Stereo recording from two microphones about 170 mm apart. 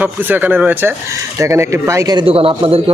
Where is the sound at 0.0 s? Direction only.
10° right (ahead or behind).